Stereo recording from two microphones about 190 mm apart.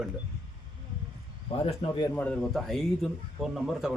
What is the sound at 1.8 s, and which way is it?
Speech, 35° left (ahead or behind).